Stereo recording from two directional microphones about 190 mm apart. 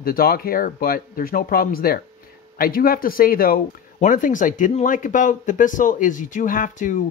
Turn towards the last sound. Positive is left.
turn(degrees=45)  # may be behind; listen again after turning